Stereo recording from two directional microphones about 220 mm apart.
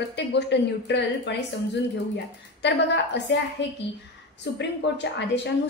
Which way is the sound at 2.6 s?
50° left (ahead or behind).